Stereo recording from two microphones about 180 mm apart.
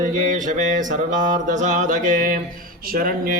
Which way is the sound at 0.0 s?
45° right (ahead or behind).